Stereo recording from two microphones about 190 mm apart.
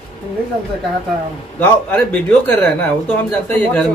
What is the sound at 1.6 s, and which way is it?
Speech, 10° left (ahead or behind).